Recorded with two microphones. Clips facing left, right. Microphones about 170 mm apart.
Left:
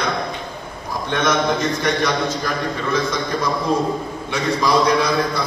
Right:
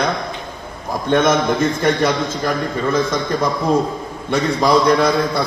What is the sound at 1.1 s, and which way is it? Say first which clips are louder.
A man's voice: right 4 dB; 50° right (ahead or behind).